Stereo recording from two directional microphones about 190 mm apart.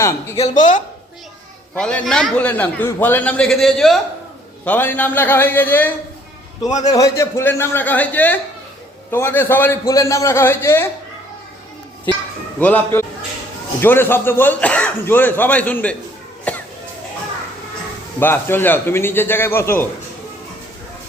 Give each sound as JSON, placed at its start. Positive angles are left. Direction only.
{"t": 0.0, "sound": "speech", "side_deg": 15}
{"t": 1.7, "sound": "a man's voice", "side_deg": 5}
{"t": 6.7, "sound": "a man's voice", "side_deg": 35}
{"t": 6.9, "sound": "speech", "side_deg": 15}
{"t": 12.5, "sound": "speech", "side_deg": 10}
{"t": 16.5, "sound": "a sound", "side_deg": 5}
{"t": 18.2, "sound": "speech", "side_deg": 10}